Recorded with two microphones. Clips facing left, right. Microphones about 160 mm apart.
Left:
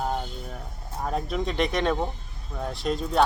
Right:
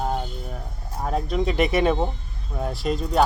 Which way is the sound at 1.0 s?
Centre (ahead or behind).